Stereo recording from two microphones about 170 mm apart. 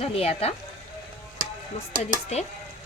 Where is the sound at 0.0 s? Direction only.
35° left (ahead or behind).